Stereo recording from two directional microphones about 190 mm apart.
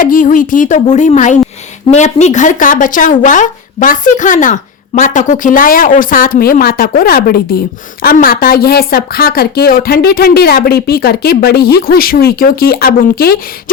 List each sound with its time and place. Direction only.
0.0 s a woman's voice: 45° left (ahead or behind)